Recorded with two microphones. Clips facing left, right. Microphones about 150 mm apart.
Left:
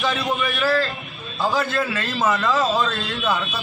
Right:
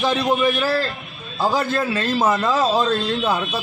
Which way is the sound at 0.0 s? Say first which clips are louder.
Right 5 dB; 35° right (ahead or behind).